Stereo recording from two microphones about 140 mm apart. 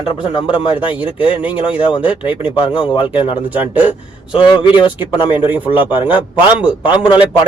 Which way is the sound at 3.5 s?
10° right (ahead or behind).